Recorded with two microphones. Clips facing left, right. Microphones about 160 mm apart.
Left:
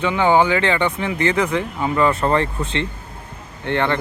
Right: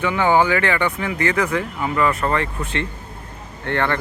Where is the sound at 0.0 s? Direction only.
20° left (ahead or behind).